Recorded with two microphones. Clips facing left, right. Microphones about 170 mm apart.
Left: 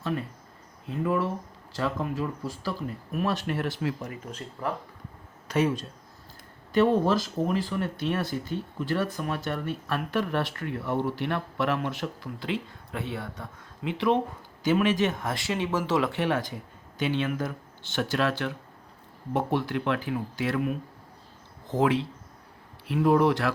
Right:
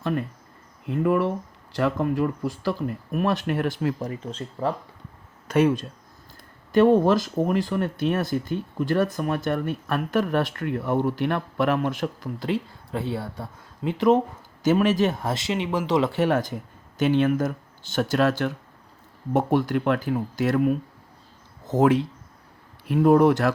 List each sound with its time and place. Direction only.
0.9 s speech: 60° right (ahead or behind)
4.0 s speech: 30° right (ahead or behind)
5.5 s speech: 55° right (ahead or behind); by 16.0 s 15° right (ahead or behind)
16.1 s speech: 45° right (ahead or behind)